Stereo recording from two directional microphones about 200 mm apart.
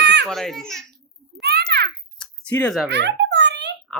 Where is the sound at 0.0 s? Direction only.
60° right (ahead or behind).